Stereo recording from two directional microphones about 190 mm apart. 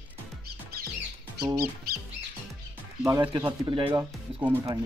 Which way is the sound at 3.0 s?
15° right (ahead or behind).